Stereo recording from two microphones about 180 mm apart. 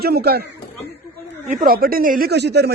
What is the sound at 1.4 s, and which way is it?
Speech, 45° right (ahead or behind).